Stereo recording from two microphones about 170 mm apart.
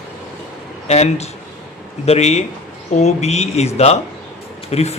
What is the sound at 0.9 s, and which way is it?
Speech, 40° left (ahead or behind).